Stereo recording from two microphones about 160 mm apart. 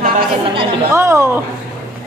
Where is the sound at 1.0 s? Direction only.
15° right (ahead or behind).